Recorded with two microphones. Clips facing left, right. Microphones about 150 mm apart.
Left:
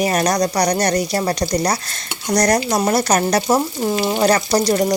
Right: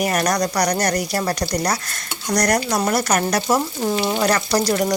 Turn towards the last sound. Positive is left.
turn(degrees=25)  # may be behind; listen again after turning